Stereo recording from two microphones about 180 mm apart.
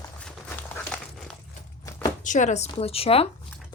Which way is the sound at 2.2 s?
45° left (ahead or behind).